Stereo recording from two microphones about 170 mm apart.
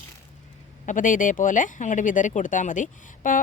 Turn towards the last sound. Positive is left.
turn(degrees=50)  # may be behind; listen again after turning